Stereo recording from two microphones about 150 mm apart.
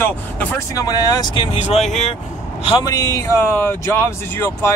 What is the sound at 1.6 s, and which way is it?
Speech, 50° left (ahead or behind).